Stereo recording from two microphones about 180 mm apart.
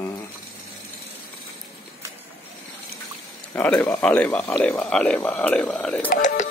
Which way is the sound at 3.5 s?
10° left (ahead or behind).